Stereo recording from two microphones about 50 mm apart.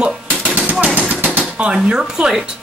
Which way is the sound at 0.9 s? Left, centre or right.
Right.